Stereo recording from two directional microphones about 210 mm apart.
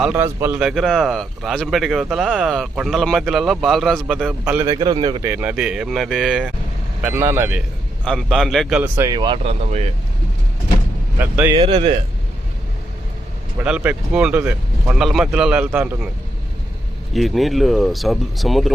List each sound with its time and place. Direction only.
0.0 s a man's voice: 10° right (ahead or behind)
4.7 s speech: 20° right (ahead or behind)
5.2 s a man's voice: 10° right (ahead or behind)
8.0 s a man's voice: centre (ahead or behind); by 9.9 s 30° right (ahead or behind)
11.2 s a man's voice: 10° right (ahead or behind)
11.5 s speech: 25° right (ahead or behind)
13.6 s a man's voice: 5° right (ahead or behind)
17.2 s a man's voice: centre (ahead or behind)